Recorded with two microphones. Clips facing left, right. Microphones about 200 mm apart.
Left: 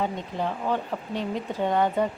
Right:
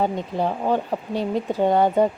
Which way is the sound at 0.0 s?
35° right (ahead or behind).